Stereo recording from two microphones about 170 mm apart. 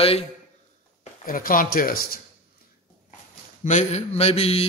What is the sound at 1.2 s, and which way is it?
Speech, 55° left (ahead or behind).